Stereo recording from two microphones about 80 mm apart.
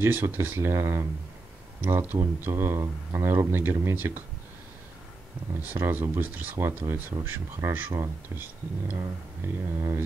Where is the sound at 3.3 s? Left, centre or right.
Right.